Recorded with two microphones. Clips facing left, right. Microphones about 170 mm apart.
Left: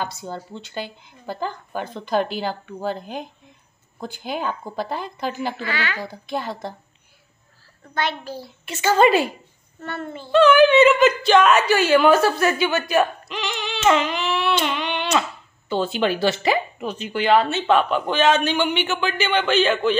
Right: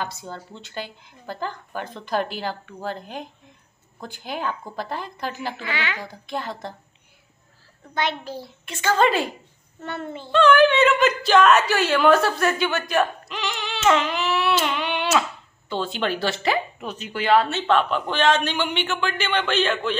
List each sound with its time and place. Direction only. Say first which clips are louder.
0.0 s speech: left 3 dB; centre (ahead or behind)
5.6 s a child's voice: left 2 dB; 20° right (ahead or behind)
5.9 s speech: left 3 dB; 5° left (ahead or behind)
7.9 s a child's voice: even; 20° right (ahead or behind)
8.6 s a woman's voice: left 4 dB; 5° left (ahead or behind)
9.8 s a child's voice: even; 20° right (ahead or behind)
10.3 s speech: left 3 dB; 5° left (ahead or behind)